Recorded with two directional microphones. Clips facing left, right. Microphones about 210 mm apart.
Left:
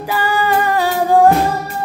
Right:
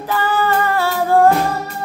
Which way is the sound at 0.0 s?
10° left (ahead or behind).